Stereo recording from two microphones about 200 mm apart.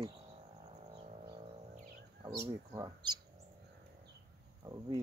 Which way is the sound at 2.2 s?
15° right (ahead or behind).